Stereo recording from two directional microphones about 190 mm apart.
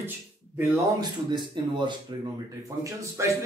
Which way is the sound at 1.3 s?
25° right (ahead or behind).